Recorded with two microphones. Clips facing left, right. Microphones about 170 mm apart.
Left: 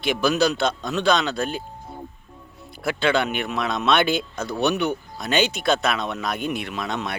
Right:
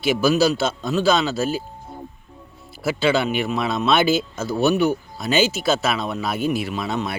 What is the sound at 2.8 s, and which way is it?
Speech, 5° right (ahead or behind).